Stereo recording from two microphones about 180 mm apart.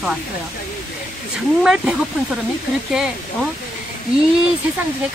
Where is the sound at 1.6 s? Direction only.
5° right (ahead or behind).